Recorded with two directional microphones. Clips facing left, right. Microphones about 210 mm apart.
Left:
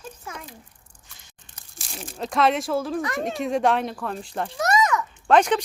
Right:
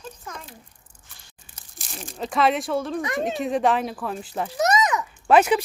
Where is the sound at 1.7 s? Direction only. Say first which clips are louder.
Even; centre (ahead or behind).